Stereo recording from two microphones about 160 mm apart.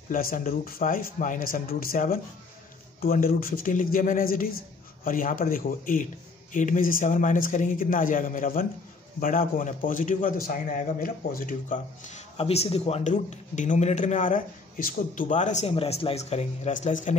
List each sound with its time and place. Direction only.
0.1 s a man's voice: 60° left (ahead or behind)
15.7 s speech: 35° left (ahead or behind)